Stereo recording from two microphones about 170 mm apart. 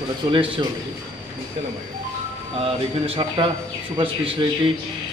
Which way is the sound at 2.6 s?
30° right (ahead or behind).